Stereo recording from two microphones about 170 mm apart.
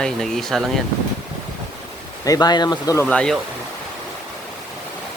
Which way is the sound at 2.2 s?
20° left (ahead or behind).